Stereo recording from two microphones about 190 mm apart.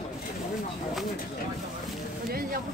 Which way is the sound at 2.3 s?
50° right (ahead or behind).